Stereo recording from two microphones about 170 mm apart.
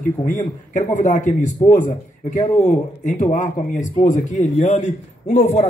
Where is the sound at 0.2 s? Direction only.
45° left (ahead or behind).